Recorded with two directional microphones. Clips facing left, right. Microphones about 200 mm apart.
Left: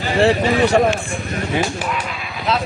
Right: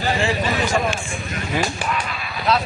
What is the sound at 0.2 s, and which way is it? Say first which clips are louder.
Speech: left 7 dB; 65° left (ahead or behind).